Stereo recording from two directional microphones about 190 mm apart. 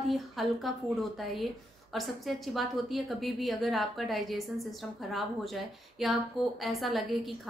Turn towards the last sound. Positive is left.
turn(degrees=0)  # may be behind; listen again after turning